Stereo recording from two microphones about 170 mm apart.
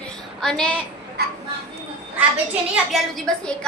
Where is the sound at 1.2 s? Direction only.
70° right (ahead or behind).